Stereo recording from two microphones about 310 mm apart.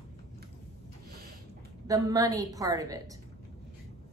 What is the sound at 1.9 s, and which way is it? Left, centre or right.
A woman's voice, centre.